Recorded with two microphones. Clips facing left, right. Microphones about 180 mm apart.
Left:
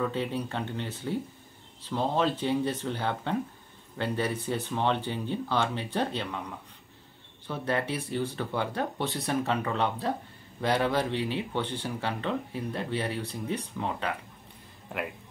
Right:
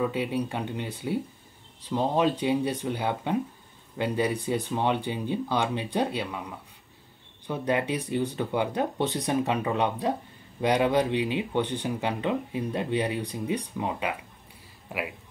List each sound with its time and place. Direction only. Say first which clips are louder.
0.0 s speech: right 3 dB; 10° right (ahead or behind)